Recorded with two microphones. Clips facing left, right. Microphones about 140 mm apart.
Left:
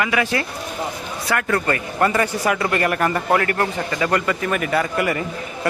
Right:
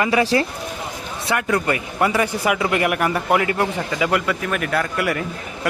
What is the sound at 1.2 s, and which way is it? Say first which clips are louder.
Speech: even; 20° right (ahead or behind).